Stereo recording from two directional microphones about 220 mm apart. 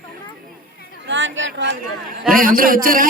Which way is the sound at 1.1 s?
60° right (ahead or behind).